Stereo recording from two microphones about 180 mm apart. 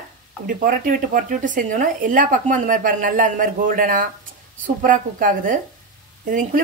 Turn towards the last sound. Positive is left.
turn(degrees=-50)  # may be behind; listen again after turning